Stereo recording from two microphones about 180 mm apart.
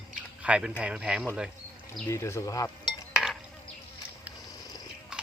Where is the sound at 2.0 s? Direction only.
15° left (ahead or behind).